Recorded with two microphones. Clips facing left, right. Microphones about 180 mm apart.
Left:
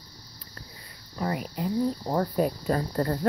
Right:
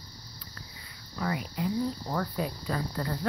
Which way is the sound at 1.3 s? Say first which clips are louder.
Left 2 dB; 40° left (ahead or behind).